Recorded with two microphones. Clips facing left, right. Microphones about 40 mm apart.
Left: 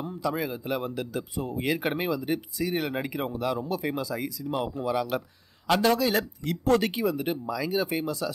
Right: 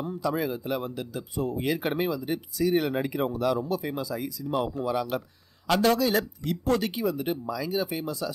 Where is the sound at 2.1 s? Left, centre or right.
Left.